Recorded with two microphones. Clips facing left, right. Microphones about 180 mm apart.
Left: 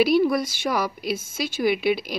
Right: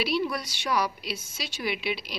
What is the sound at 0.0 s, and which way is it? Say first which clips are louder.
Speech: left 9 dB; 50° left (ahead or behind).